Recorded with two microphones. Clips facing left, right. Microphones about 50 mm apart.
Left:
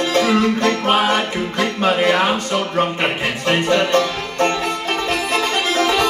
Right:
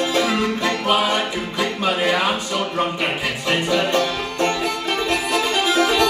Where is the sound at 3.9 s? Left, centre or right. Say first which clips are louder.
Left 3 dB; left.